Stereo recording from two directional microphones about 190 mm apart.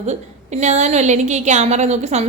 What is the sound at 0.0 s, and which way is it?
A woman's voice, 35° right (ahead or behind).